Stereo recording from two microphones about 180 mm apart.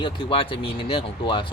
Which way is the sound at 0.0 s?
30° left (ahead or behind).